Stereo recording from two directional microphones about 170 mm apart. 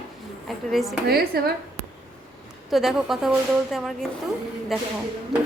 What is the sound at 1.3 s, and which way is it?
Speech, 65° right (ahead or behind).